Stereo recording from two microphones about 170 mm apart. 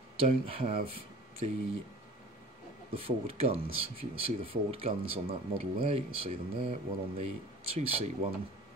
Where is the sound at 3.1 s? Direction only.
35° right (ahead or behind).